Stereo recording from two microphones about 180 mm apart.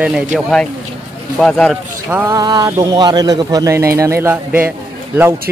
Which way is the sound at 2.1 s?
15° right (ahead or behind).